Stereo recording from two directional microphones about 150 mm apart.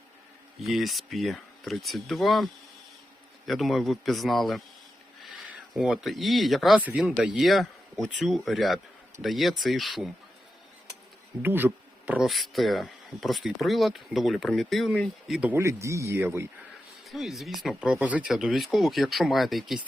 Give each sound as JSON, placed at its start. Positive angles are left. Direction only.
{"t": 0.6, "sound": "speech", "side_deg": 0}
{"t": 11.4, "sound": "speech", "side_deg": -15}
{"t": 15.4, "sound": "speech", "side_deg": -15}
{"t": 17.1, "sound": "speech", "side_deg": 0}